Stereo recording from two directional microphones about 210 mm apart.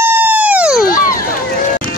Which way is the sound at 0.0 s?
10° right (ahead or behind).